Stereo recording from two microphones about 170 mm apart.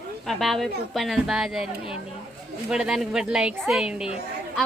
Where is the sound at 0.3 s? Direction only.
Centre (ahead or behind).